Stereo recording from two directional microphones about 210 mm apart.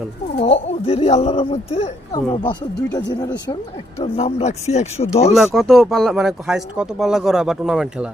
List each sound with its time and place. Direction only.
0.3 s speech: 25° left (ahead or behind)
4.0 s speech: 30° left (ahead or behind)
5.5 s speech: centre (ahead or behind)